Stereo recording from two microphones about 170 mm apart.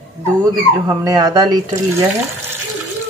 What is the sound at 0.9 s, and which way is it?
Speech, 20° right (ahead or behind).